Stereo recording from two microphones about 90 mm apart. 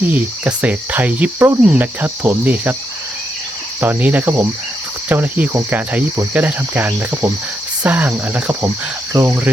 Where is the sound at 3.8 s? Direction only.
15° right (ahead or behind).